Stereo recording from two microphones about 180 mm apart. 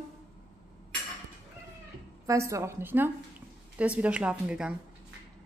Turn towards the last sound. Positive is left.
turn(degrees=-5)  # may be behind; listen again after turning